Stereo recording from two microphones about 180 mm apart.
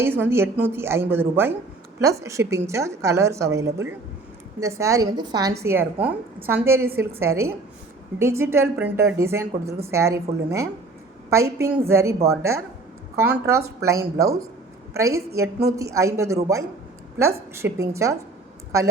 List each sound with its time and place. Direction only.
0.0 s a woman's voice: 10° right (ahead or behind)